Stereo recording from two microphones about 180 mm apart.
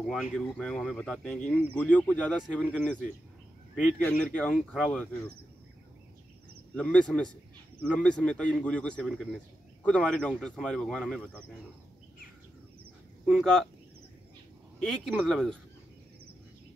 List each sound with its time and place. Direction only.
0.0 s speech: centre (ahead or behind)
4.0 s speech: 5° left (ahead or behind)
6.7 s speech: 5° left (ahead or behind)
13.2 s speech: centre (ahead or behind)
14.8 s speech: 5° left (ahead or behind)